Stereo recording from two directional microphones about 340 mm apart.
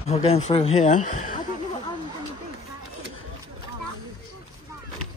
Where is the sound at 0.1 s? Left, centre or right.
Centre.